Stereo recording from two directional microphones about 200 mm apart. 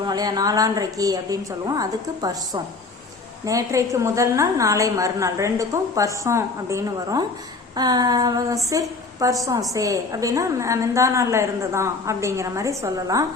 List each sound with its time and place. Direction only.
0.0 s a woman's voice: 20° right (ahead or behind)
7.8 s female singing: 20° right (ahead or behind)
9.2 s a woman's voice: 15° right (ahead or behind)